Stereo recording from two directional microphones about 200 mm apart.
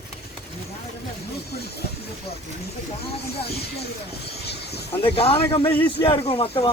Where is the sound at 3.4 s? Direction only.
55° left (ahead or behind).